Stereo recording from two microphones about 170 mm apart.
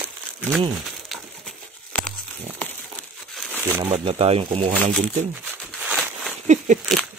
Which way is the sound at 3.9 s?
35° right (ahead or behind).